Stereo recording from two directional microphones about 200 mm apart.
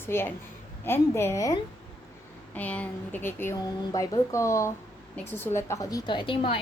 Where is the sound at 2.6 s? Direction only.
5° left (ahead or behind).